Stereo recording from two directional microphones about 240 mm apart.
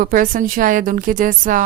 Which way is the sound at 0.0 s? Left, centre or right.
Right.